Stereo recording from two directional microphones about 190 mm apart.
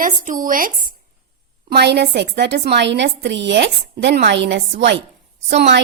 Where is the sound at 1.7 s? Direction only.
60° right (ahead or behind).